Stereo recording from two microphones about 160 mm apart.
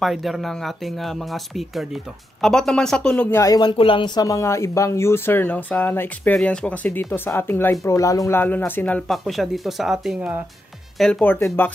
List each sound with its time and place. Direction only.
0.0 s speech: centre (ahead or behind)